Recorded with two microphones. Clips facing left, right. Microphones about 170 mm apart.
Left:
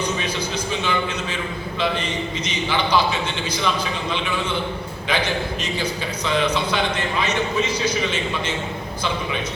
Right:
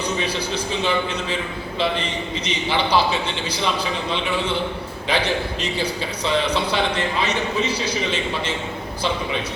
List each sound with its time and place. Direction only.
0.2 s a sound: 30° right (ahead or behind)
2.5 s a man's voice: 30° right (ahead or behind)
5.0 s a man's voice: 30° right (ahead or behind)